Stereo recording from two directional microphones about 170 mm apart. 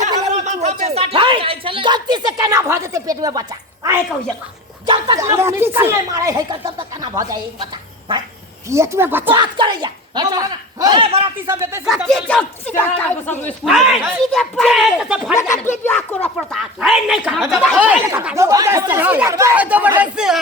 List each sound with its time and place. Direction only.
0.3 s speech: 45° right (ahead or behind); by 3.4 s 20° right (ahead or behind)
4.9 s speech: 25° right (ahead or behind)
9.3 s a woman's voice: 25° right (ahead or behind)
11.4 s speech: 15° right (ahead or behind)
11.9 s a woman's voice: centre (ahead or behind)
13.7 s speech: centre (ahead or behind)
15.4 s a woman's voice: 15° left (ahead or behind)
17.7 s speech: 10° right (ahead or behind)